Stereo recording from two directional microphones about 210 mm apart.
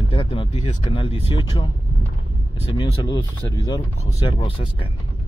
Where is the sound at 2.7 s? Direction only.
20° left (ahead or behind).